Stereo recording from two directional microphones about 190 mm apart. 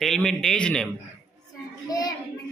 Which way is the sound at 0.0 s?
Centre (ahead or behind).